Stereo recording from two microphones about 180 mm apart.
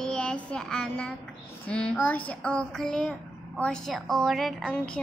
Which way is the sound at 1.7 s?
5° left (ahead or behind).